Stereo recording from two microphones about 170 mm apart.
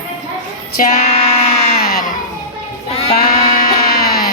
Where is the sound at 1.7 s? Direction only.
65° left (ahead or behind).